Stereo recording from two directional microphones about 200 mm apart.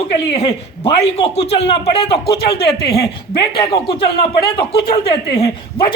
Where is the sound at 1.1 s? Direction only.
30° left (ahead or behind).